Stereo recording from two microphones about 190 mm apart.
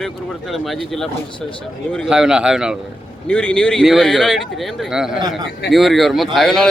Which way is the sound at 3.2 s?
5° left (ahead or behind).